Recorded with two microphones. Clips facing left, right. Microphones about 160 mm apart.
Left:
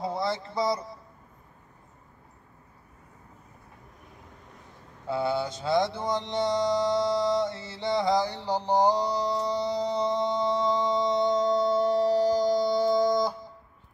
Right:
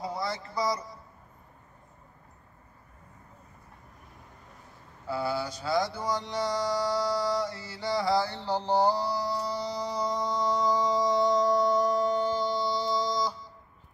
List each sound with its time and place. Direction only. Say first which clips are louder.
0.0 s speech: left 4 dB; 25° left (ahead or behind)
5.0 s mantra: left 3 dB; 25° left (ahead or behind); by 13.5 s 55° left (ahead or behind)